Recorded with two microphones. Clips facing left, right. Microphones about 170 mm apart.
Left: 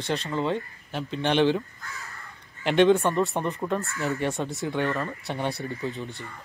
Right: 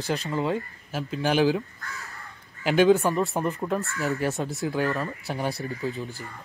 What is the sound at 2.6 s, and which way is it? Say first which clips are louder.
Speech: even; 5° right (ahead or behind).